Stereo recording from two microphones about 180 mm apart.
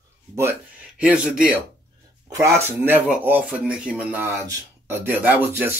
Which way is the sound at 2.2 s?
15° right (ahead or behind).